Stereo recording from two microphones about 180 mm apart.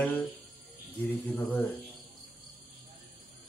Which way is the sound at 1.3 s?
10° left (ahead or behind).